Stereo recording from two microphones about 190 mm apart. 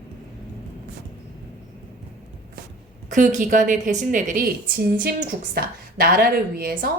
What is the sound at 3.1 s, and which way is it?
A woman's voice, 40° right (ahead or behind).